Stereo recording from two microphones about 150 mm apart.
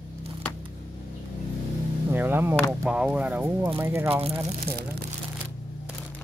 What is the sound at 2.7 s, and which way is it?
Speech, 5° right (ahead or behind).